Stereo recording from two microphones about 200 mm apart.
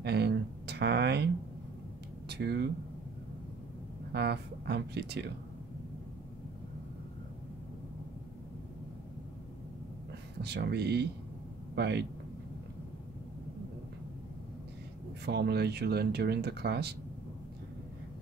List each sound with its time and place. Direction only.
0.0 s a sound: 55° right (ahead or behind)
2.2 s speech: 55° right (ahead or behind)
4.1 s speech: 55° right (ahead or behind)
10.4 s speech: 55° right (ahead or behind)
15.2 s speech: 55° right (ahead or behind)